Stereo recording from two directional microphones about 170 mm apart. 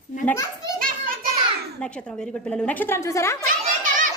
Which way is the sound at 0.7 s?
55° right (ahead or behind).